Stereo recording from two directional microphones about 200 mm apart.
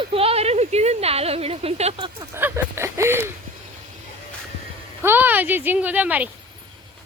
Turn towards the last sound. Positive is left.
turn(degrees=-10)  # may be behind; listen again after turning